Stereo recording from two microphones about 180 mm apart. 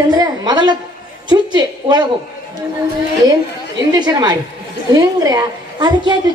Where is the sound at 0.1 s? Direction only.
20° right (ahead or behind).